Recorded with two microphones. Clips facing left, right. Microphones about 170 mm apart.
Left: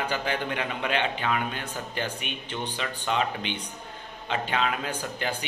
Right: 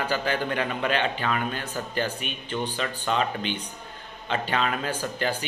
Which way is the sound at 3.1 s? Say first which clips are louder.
Right 1 dB; 15° left (ahead or behind).